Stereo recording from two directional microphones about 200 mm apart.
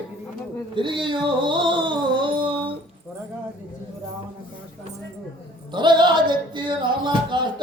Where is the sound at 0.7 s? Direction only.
25° right (ahead or behind).